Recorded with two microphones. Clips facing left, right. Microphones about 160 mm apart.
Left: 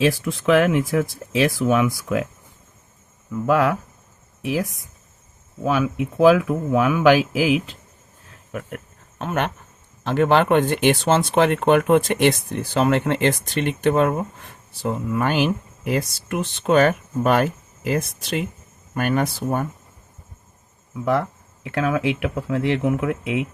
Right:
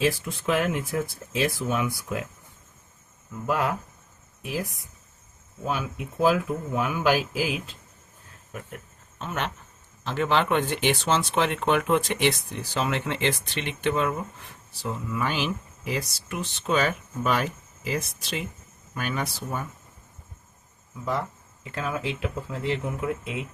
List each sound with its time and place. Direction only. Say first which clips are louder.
0.0 s speech: left 6 dB; 90° left
3.5 s speech: left 7 dB; 90° left
8.5 s speech: left 8 dB; 65° left (ahead or behind)
21.0 s speech: left 8 dB; 65° left (ahead or behind)